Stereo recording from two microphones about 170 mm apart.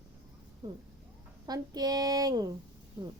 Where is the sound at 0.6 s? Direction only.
25° right (ahead or behind).